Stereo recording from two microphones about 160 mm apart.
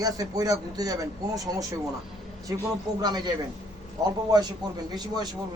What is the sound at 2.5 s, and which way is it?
A man's voice, 20° right (ahead or behind).